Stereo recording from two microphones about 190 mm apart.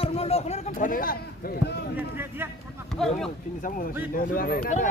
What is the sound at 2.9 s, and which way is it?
Speech, centre (ahead or behind).